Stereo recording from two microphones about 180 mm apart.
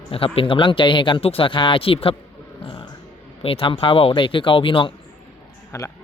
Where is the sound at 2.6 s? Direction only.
30° left (ahead or behind).